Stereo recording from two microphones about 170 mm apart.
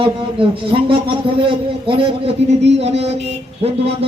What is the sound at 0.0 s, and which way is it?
A man's voice, 30° right (ahead or behind).